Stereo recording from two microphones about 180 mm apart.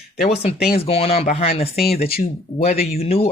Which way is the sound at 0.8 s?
35° left (ahead or behind).